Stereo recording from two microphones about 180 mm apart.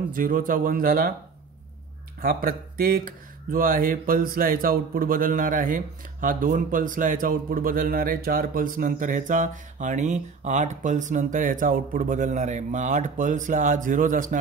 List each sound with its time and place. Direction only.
0.1 s a man's voice: 50° right (ahead or behind)
2.2 s a man's voice: 55° right (ahead or behind)